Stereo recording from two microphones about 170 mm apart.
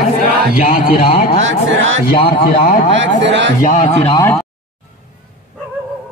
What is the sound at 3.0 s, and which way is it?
Speech, 90° right.